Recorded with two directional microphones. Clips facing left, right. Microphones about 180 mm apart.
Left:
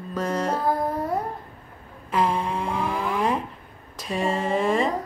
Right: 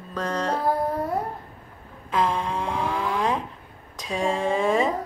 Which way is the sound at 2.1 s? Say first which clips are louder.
Left 1 dB; 5° left (ahead or behind).